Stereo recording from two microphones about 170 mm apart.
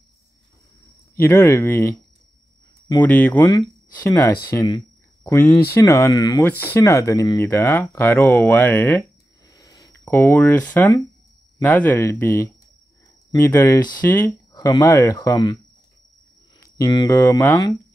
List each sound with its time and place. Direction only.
1.1 s speech: 15° left (ahead or behind)
3.0 s speech: 10° left (ahead or behind)
3.4 s speech: 20° left (ahead or behind)
9.5 s a sound: 20° left (ahead or behind)
10.1 s speech: 10° left (ahead or behind)